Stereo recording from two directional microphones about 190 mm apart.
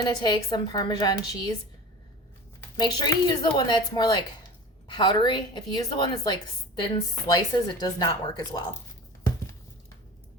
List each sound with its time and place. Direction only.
0.0 s a woman's voice: 20° left (ahead or behind)
2.7 s a woman's voice: 20° left (ahead or behind)
7.3 s a woman's voice: 20° left (ahead or behind)